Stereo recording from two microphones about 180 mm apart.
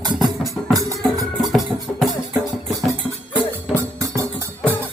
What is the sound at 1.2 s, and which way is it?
Music, centre (ahead or behind).